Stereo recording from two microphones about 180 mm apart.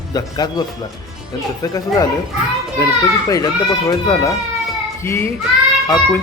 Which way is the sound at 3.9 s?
20° left (ahead or behind).